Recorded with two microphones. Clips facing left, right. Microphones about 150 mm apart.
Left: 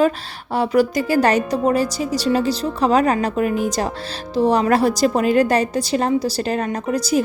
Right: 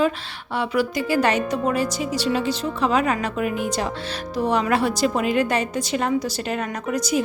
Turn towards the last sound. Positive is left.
turn(degrees=30)  # may be behind; listen again after turning